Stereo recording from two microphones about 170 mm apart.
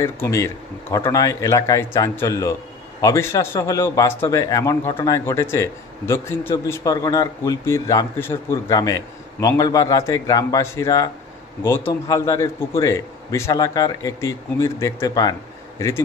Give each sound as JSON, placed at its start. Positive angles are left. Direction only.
{"t": 0.0, "sound": "a man's voice", "side_deg": 15}